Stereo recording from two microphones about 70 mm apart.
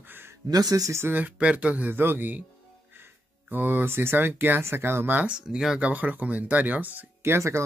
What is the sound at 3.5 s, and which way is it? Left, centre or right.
A man's voice, right.